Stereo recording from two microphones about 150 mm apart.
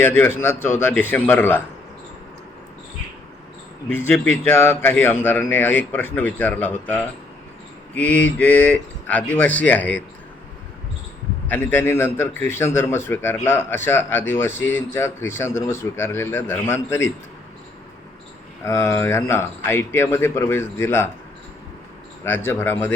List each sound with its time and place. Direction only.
0.0 s a man's voice: 15° left (ahead or behind)
4.3 s a man's voice: 15° left (ahead or behind)
11.4 s a man's voice: 15° left (ahead or behind)
18.6 s a man's voice: 20° left (ahead or behind)
22.2 s a man's voice: 15° left (ahead or behind)